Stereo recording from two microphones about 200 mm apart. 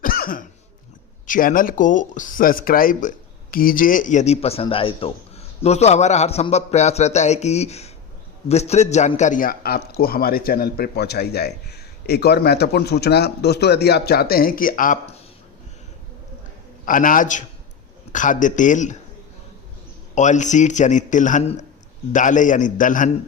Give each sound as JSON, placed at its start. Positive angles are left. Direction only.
{"t": 0.0, "sound": "cough", "side_deg": 45}
{"t": 1.3, "sound": "a man's voice", "side_deg": 45}
{"t": 16.8, "sound": "speech", "side_deg": 40}
{"t": 20.1, "sound": "speech", "side_deg": 35}